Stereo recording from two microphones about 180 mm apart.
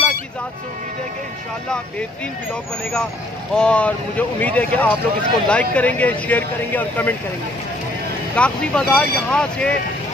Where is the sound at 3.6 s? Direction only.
5° left (ahead or behind).